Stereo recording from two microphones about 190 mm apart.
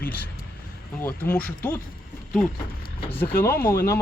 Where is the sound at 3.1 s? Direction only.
10° left (ahead or behind).